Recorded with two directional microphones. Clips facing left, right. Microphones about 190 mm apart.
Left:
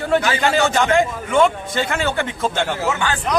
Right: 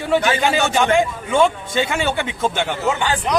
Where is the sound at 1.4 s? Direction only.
15° right (ahead or behind).